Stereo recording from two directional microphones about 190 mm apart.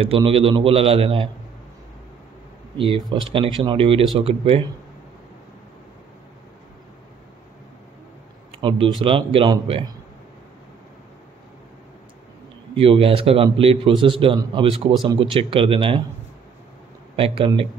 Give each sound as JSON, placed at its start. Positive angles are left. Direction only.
{"t": 0.0, "sound": "a man's voice", "side_deg": -30}
{"t": 2.8, "sound": "a man's voice", "side_deg": -25}
{"t": 8.5, "sound": "a man's voice", "side_deg": -25}
{"t": 12.7, "sound": "a man's voice", "side_deg": -30}
{"t": 17.1, "sound": "a man's voice", "side_deg": -30}